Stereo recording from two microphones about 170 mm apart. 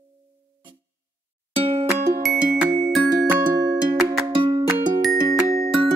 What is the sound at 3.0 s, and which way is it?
Music, 25° right (ahead or behind).